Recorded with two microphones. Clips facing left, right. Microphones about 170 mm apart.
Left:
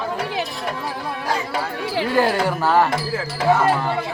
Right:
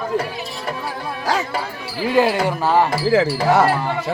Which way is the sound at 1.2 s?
90° right.